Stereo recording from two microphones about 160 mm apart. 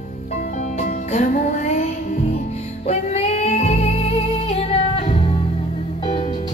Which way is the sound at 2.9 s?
40° left (ahead or behind).